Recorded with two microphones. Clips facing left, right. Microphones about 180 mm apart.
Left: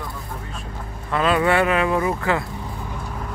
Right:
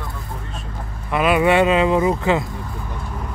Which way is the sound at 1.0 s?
15° right (ahead or behind).